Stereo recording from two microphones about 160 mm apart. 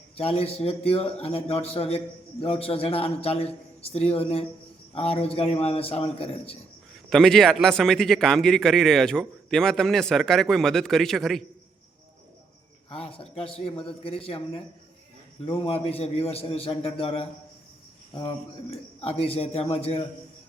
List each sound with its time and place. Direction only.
0.2 s a man's voice: 40° left (ahead or behind)
6.9 s a man's voice: centre (ahead or behind)
12.9 s a man's voice: 35° left (ahead or behind)